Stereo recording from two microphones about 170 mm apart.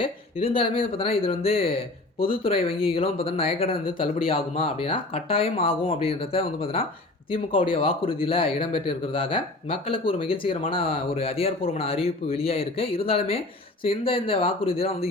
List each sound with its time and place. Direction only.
0.0 s speech: 30° left (ahead or behind)